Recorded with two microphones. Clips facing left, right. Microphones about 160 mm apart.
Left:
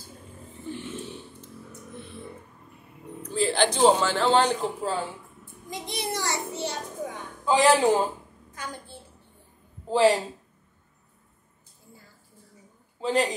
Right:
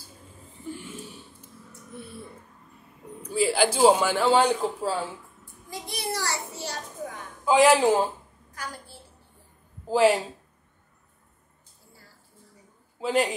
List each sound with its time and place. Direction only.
1.7 s a sound: 10° right (ahead or behind)
3.2 s a man's voice: 10° right (ahead or behind)
5.4 s a child's voice: 20° left (ahead or behind)
7.4 s speech: 5° right (ahead or behind)
8.6 s a child's voice: 20° left (ahead or behind)
9.8 s a woman's voice: 5° right (ahead or behind)
13.0 s speech: 5° right (ahead or behind)